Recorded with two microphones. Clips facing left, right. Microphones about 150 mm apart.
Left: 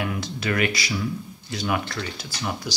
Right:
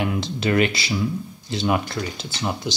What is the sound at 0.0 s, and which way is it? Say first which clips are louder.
Speech: right 4 dB; 25° right (ahead or behind).